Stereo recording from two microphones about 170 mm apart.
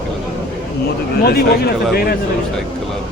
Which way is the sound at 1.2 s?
65° left (ahead or behind).